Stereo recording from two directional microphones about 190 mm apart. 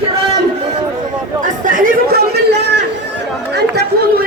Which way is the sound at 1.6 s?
45° right (ahead or behind).